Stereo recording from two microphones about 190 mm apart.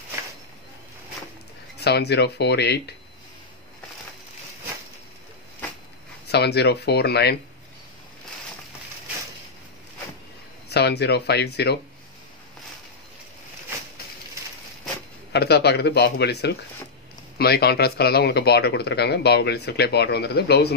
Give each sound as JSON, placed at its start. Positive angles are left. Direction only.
{"t": 1.8, "sound": "speech", "side_deg": 60}
{"t": 6.2, "sound": "speech", "side_deg": 60}
{"t": 10.7, "sound": "speech", "side_deg": 60}
{"t": 15.3, "sound": "speech", "side_deg": 60}